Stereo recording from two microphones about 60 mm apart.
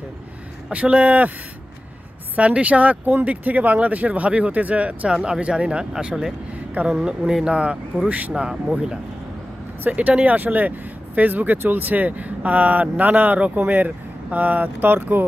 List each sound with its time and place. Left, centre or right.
0.7 s speech: right
2.3 s speech: right
9.8 s speech: right